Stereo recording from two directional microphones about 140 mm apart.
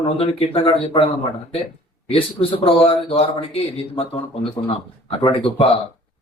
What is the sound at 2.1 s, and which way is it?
A man's voice, 40° left (ahead or behind).